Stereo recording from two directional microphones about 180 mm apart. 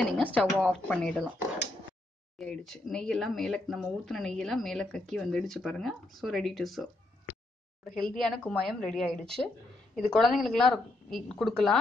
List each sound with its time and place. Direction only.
0.0 s speech: 5° left (ahead or behind)
2.3 s speech: centre (ahead or behind)
7.9 s speech: 5° left (ahead or behind)